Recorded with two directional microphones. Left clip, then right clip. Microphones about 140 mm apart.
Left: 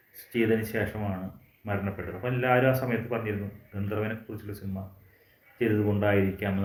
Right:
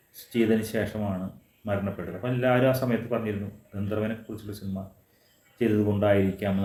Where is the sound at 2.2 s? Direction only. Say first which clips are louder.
Right 1 dB; 25° right (ahead or behind).